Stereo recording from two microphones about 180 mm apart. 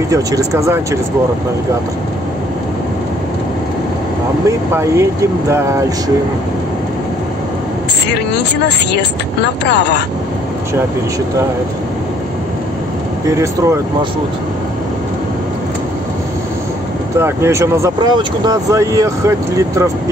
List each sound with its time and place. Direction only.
4.5 s speech: 15° right (ahead or behind)
8.1 s speech: 70° left (ahead or behind)
13.3 s speech: 15° right (ahead or behind)
17.2 s speech: 15° right (ahead or behind)